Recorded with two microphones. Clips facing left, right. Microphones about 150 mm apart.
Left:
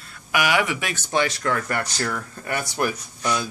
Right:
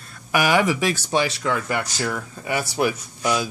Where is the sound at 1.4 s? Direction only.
5° right (ahead or behind).